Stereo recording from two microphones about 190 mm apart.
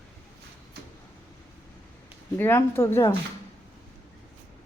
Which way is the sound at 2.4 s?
10° left (ahead or behind).